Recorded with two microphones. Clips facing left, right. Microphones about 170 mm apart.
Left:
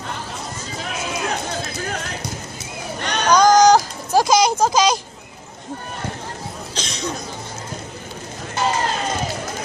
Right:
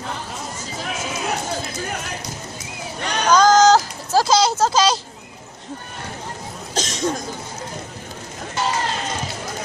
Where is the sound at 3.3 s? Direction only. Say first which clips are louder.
Left 1 dB; 15° left (ahead or behind).